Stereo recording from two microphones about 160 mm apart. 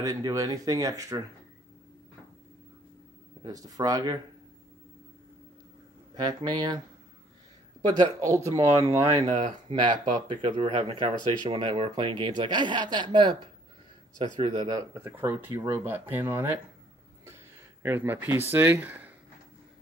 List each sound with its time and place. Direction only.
0.0 s speech: 20° right (ahead or behind)
3.4 s speech: 25° right (ahead or behind)
6.1 s speech: 25° right (ahead or behind)
7.8 s speech: 25° right (ahead or behind)
9.2 s speech: 45° right (ahead or behind)
10.2 s speech: 30° right (ahead or behind); by 16.4 s 10° right (ahead or behind)
17.8 s speech: 10° right (ahead or behind)